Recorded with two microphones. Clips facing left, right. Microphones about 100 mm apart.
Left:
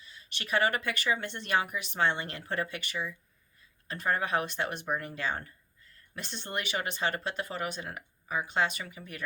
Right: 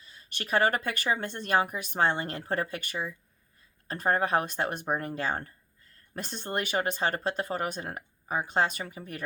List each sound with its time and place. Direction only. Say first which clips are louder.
0.0 s speech: right 3 dB; 40° right (ahead or behind)